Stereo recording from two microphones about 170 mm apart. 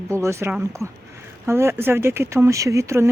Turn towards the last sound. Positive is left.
turn(degrees=-15)  # may be behind; listen again after turning